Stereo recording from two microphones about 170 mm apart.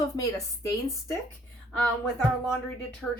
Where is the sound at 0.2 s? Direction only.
20° left (ahead or behind).